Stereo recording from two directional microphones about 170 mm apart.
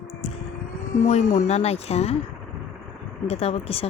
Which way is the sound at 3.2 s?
35° left (ahead or behind).